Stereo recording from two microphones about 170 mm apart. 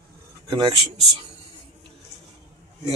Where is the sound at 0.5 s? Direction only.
25° right (ahead or behind).